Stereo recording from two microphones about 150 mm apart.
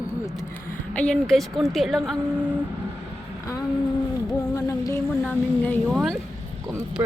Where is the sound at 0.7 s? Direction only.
5° left (ahead or behind).